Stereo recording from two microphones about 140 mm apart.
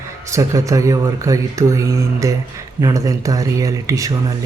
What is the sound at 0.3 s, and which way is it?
Speech, 20° right (ahead or behind).